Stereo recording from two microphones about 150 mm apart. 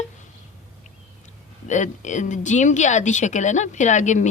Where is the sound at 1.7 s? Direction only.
55° left (ahead or behind).